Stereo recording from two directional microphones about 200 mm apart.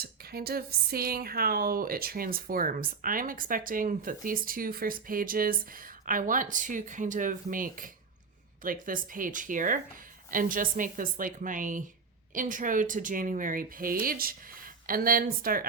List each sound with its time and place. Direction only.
0.0 s speech: 50° right (ahead or behind)